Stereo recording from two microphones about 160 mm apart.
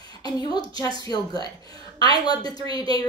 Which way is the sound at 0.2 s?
25° left (ahead or behind).